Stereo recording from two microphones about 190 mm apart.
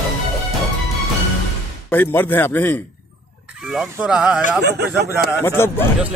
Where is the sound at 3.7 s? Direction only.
5° right (ahead or behind).